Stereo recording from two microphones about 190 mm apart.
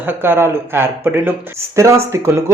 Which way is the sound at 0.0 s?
10° right (ahead or behind).